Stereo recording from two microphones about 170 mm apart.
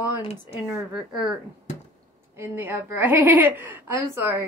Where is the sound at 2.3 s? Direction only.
15° right (ahead or behind).